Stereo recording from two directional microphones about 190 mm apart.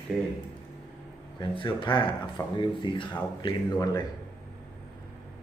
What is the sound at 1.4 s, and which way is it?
Speech, 25° left (ahead or behind).